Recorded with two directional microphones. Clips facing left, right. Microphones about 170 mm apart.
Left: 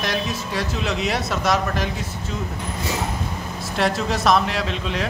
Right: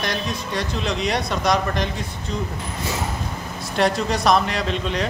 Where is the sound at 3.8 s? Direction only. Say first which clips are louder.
Right 1 dB; centre (ahead or behind).